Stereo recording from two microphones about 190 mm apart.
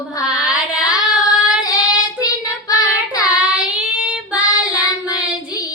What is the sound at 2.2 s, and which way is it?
Child singing, 20° left (ahead or behind).